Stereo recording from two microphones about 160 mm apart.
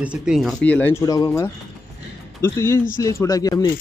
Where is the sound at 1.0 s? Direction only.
25° left (ahead or behind).